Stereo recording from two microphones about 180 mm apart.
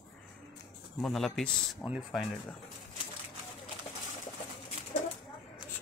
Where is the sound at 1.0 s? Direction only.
Centre (ahead or behind).